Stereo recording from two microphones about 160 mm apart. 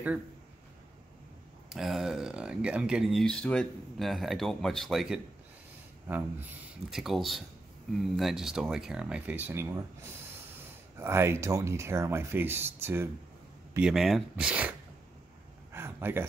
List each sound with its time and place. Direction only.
1.7 s speech: centre (ahead or behind)
11.0 s speech: 15° right (ahead or behind)
13.7 s speech: 5° right (ahead or behind)
15.7 s a sound: 15° right (ahead or behind)